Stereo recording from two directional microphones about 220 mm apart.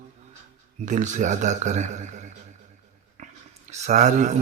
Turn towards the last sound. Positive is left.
turn(degrees=-35)  # may be behind; listen again after turning